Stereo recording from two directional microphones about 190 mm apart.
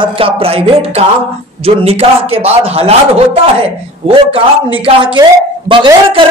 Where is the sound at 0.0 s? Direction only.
30° right (ahead or behind).